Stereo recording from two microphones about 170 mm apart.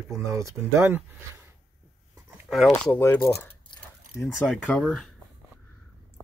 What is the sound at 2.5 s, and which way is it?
Speech, centre (ahead or behind).